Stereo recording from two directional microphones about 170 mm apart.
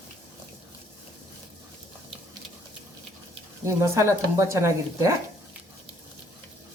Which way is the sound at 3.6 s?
15° right (ahead or behind).